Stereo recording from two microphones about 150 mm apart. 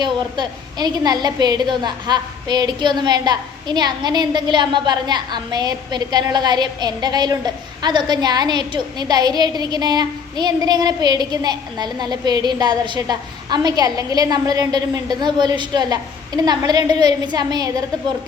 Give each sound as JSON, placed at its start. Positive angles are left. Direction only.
{"t": 0.0, "sound": "a woman's voice", "side_deg": -30}